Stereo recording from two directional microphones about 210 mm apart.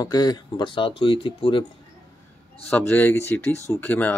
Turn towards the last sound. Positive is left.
turn(degrees=10)  # may be behind; listen again after turning